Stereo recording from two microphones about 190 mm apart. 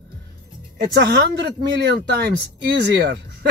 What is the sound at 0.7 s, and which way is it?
Speech, 60° right (ahead or behind).